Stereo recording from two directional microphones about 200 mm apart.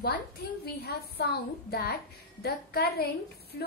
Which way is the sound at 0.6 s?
55° left (ahead or behind).